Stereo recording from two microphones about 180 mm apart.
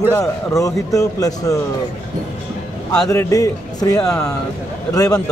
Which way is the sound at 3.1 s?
15° left (ahead or behind).